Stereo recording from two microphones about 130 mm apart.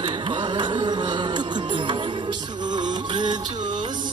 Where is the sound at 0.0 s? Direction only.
35° right (ahead or behind).